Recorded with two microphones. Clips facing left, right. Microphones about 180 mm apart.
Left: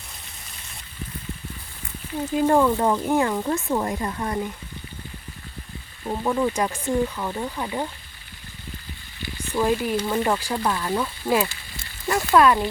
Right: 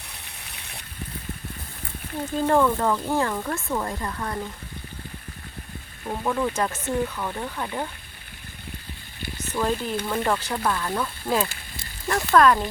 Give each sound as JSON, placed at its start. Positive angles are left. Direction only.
{"t": 0.4, "sound": "a sound", "side_deg": -65}
{"t": 2.3, "sound": "speech", "side_deg": 10}
{"t": 6.1, "sound": "speech", "side_deg": 10}
{"t": 9.5, "sound": "speech", "side_deg": 10}